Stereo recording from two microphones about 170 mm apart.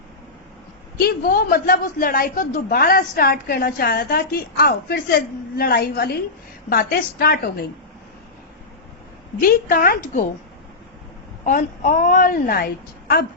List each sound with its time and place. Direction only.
0.9 s a woman's voice: 60° left (ahead or behind)
9.4 s a woman's voice: 60° left (ahead or behind)
11.4 s a woman's voice: 50° left (ahead or behind)